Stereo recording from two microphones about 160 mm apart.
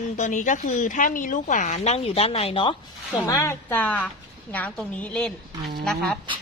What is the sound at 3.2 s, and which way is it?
A woman's voice, 20° left (ahead or behind).